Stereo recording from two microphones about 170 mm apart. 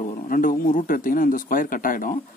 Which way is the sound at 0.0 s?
50° left (ahead or behind).